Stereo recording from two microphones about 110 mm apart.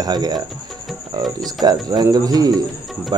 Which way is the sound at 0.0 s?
40° right (ahead or behind).